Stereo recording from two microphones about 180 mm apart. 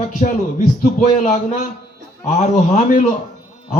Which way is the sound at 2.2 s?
45° left (ahead or behind).